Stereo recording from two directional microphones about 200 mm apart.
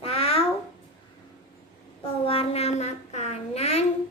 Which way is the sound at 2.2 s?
30° left (ahead or behind).